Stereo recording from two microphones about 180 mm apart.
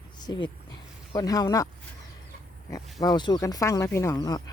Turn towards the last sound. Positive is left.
turn(degrees=20)  # may be behind; listen again after turning